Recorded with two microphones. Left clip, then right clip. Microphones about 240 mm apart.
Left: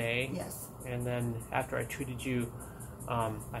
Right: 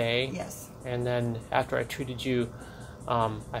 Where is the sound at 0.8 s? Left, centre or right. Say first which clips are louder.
Right 7 dB; right.